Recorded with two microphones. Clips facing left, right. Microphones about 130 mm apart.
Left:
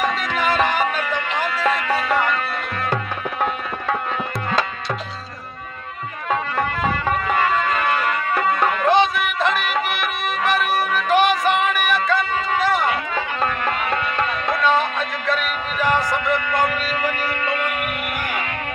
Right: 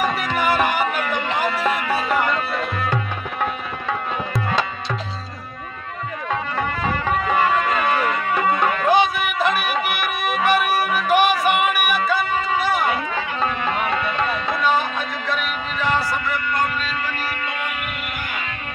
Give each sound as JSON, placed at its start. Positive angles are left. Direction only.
{"t": 0.0, "sound": "music", "side_deg": -10}
{"t": 7.3, "sound": "music", "side_deg": -10}
{"t": 15.8, "sound": "music", "side_deg": 15}